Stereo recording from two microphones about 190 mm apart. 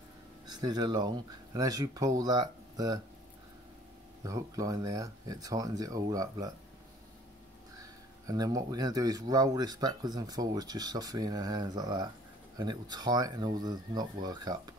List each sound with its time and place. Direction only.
0.5 s speech: 20° right (ahead or behind)
4.2 s speech: 15° right (ahead or behind)
8.3 s speech: 20° right (ahead or behind)